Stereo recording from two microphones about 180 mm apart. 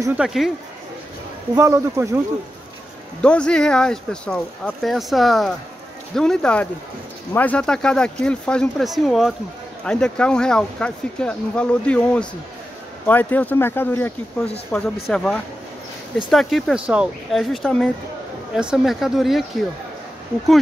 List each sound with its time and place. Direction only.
0.2 s speech: centre (ahead or behind)
1.5 s speech: 15° right (ahead or behind)
3.2 s speech: 5° left (ahead or behind)